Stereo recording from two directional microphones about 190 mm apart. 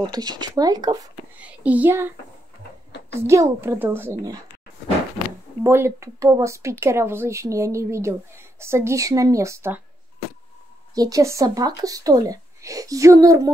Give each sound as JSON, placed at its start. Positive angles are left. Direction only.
{"t": 0.0, "sound": "speech", "side_deg": -20}
{"t": 1.4, "sound": "a child's voice", "side_deg": -5}
{"t": 5.6, "sound": "a woman's voice", "side_deg": -15}
{"t": 11.0, "sound": "a woman's voice", "side_deg": -20}